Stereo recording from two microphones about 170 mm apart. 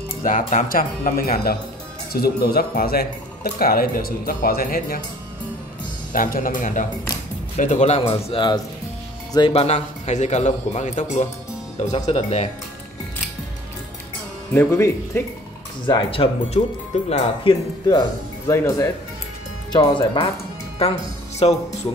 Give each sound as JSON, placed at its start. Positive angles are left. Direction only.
{"t": 0.2, "sound": "speech", "side_deg": 50}
{"t": 6.1, "sound": "a man's voice", "side_deg": 55}
{"t": 8.1, "sound": "a man's voice", "side_deg": 30}
{"t": 14.5, "sound": "speech", "side_deg": 15}
{"t": 15.9, "sound": "a man's voice", "side_deg": 30}
{"t": 18.5, "sound": "speech", "side_deg": 20}
{"t": 21.4, "sound": "a man's voice", "side_deg": 35}